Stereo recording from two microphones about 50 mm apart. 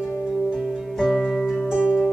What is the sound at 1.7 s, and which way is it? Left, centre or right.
Music, right.